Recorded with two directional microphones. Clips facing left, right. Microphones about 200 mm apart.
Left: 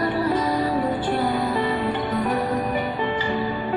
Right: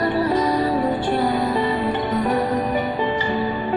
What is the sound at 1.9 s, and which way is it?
Music, 25° right (ahead or behind).